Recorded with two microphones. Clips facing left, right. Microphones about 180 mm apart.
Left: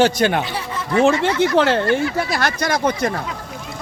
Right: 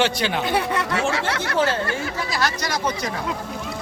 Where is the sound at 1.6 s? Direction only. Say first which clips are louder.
Left 6 dB; 70° left (ahead or behind).